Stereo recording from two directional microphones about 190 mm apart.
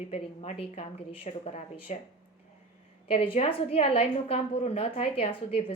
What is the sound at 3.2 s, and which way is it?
A woman's voice, 30° left (ahead or behind).